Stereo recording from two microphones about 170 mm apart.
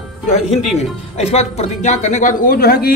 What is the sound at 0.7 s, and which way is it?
Speech, 40° left (ahead or behind).